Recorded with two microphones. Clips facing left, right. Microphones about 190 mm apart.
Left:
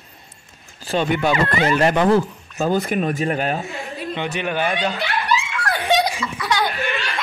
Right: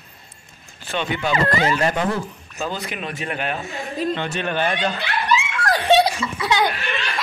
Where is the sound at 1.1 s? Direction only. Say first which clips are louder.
Even; 50° left (ahead or behind).